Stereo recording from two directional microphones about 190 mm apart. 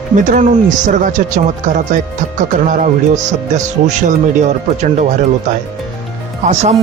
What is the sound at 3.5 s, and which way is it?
Speech, 40° right (ahead or behind).